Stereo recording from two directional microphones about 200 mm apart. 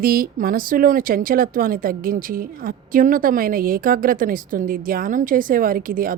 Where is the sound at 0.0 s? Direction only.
45° right (ahead or behind).